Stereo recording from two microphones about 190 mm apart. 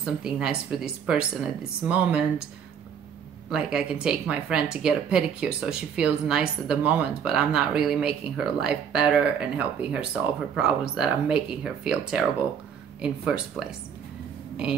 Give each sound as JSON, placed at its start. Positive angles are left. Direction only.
{"t": 0.0, "sound": "a woman's voice", "side_deg": -5}
{"t": 3.4, "sound": "a woman's voice", "side_deg": -5}